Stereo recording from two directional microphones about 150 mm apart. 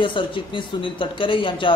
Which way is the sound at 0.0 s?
35° left (ahead or behind).